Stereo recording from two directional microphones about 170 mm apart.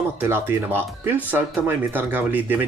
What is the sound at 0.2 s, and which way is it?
Speech, 15° right (ahead or behind).